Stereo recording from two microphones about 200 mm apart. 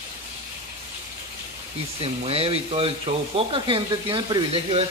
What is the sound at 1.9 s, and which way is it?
Speech, 30° right (ahead or behind).